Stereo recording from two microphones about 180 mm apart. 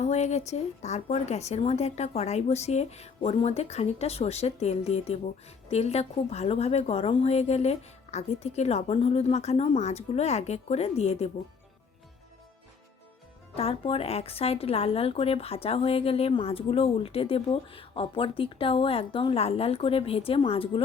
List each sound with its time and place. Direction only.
0.0 s speech: 40° left (ahead or behind)
13.6 s speech: 30° left (ahead or behind)